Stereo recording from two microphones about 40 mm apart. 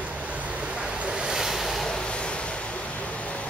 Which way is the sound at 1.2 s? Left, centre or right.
Centre.